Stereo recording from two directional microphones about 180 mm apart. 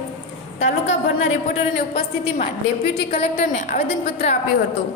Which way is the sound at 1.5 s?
30° left (ahead or behind).